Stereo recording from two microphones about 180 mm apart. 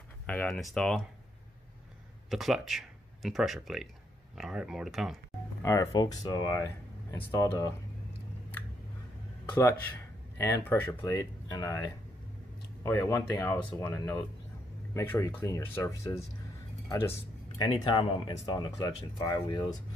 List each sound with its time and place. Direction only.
0.3 s speech: 5° left (ahead or behind)
2.2 s speech: centre (ahead or behind)
5.6 s speech: 15° left (ahead or behind)
9.5 s speech: 15° left (ahead or behind)
17.6 s speech: 25° left (ahead or behind)